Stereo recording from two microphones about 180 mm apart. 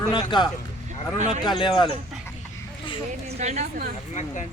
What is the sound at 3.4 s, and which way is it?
Speech, 40° right (ahead or behind).